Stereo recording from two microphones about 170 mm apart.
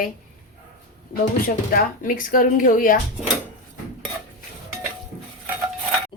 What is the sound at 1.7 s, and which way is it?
Speech, 55° left (ahead or behind).